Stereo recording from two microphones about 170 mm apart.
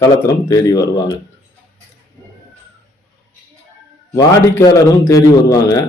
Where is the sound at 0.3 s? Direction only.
20° left (ahead or behind).